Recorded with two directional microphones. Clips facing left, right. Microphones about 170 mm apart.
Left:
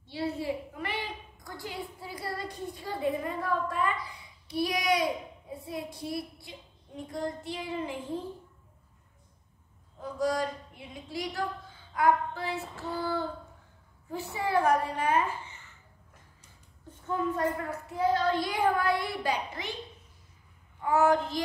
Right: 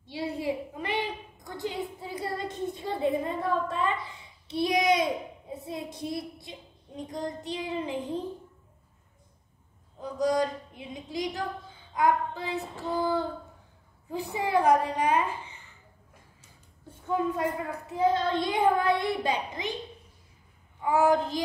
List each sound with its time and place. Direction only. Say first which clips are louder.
0.0 s a sound: right 1 dB; 15° right (ahead or behind)
7.0 s a child's voice: even; 20° right (ahead or behind)
9.9 s a woman's voice: right 3 dB; 20° right (ahead or behind)
16.9 s a woman's voice: right 2 dB; 10° right (ahead or behind)
17.9 s a child's voice: right 1 dB; 25° right (ahead or behind)
20.8 s a woman's voice: right 1 dB; 10° right (ahead or behind)